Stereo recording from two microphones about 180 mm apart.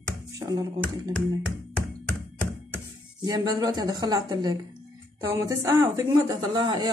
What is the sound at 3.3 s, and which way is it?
A woman's voice, 20° right (ahead or behind).